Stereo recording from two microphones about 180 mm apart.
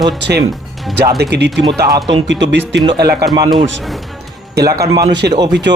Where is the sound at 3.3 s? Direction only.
25° right (ahead or behind).